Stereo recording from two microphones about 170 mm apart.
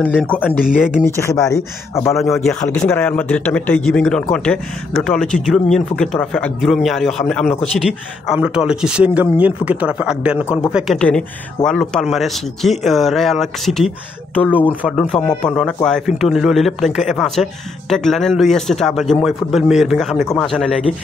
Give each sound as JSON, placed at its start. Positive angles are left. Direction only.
{"t": 0.1, "sound": "speech", "side_deg": 10}
{"t": 0.5, "sound": "a man's voice", "side_deg": -5}
{"t": 1.0, "sound": "speech", "side_deg": 15}
{"t": 2.1, "sound": "a man's voice", "side_deg": 0}
{"t": 14.6, "sound": "a man's voice", "side_deg": 10}